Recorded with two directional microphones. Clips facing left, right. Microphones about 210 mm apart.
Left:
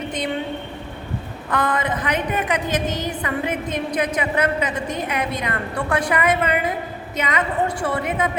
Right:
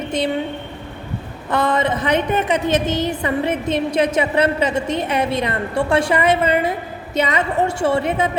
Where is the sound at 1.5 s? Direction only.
25° right (ahead or behind).